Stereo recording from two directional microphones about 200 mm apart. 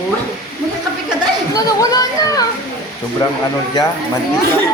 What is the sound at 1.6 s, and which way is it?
Speech, 20° left (ahead or behind).